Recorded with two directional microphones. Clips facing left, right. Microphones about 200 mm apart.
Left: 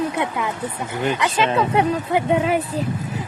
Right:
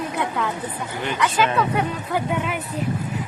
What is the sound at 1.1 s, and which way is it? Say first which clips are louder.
Speech: right 1 dB; 25° left (ahead or behind).